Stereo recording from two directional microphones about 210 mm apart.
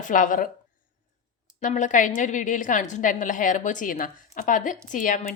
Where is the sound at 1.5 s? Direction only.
35° left (ahead or behind).